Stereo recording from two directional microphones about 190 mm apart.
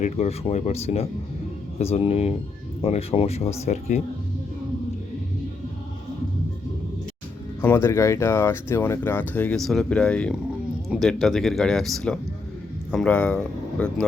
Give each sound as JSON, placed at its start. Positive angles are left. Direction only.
{"t": 0.0, "sound": "speech", "side_deg": 35}
{"t": 7.6, "sound": "a man's voice", "side_deg": 10}